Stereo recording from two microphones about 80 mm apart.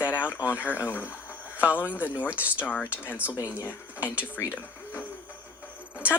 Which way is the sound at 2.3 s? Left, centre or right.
Centre.